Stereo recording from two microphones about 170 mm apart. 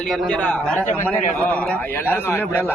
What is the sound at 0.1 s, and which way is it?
A man's voice, 5° left (ahead or behind).